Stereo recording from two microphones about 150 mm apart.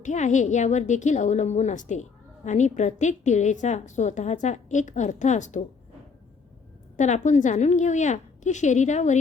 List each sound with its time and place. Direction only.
0.0 s a woman's voice: 55° left (ahead or behind)
6.9 s a woman's voice: 55° left (ahead or behind)